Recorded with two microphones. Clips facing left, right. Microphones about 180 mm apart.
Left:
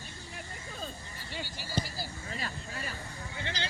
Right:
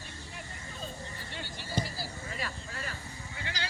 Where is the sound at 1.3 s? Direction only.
5° left (ahead or behind).